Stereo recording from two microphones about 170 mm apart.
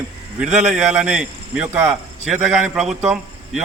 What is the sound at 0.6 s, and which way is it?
A man's voice, 10° right (ahead or behind).